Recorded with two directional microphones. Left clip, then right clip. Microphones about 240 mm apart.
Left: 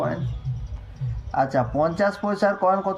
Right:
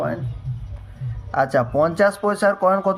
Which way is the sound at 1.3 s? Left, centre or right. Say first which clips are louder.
Right 3 dB; right.